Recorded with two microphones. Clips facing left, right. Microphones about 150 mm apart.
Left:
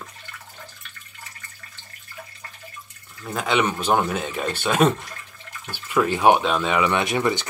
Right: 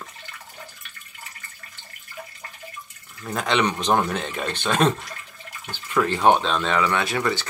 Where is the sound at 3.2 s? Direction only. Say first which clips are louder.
Even; centre (ahead or behind).